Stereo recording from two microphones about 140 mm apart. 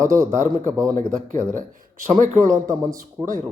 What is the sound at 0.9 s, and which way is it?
Speech, 70° right (ahead or behind).